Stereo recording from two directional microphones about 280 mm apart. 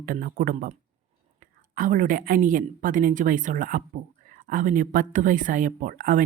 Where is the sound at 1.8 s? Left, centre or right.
Right.